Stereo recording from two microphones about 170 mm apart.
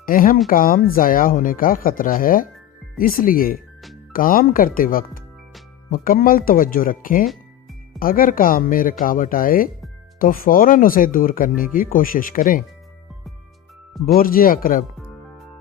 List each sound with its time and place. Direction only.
0.0 s speech: 55° left (ahead or behind)
14.0 s speech: 60° left (ahead or behind)